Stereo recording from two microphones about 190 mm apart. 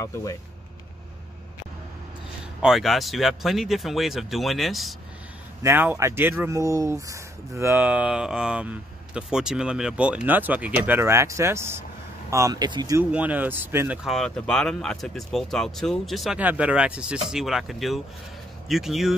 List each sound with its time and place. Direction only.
0.0 s speech: 15° left (ahead or behind)
2.6 s speech: centre (ahead or behind)
5.6 s speech: 10° right (ahead or behind)
13.1 s speech: 10° right (ahead or behind)